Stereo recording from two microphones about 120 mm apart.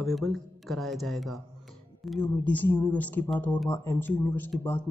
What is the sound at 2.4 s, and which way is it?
Speech, 15° left (ahead or behind).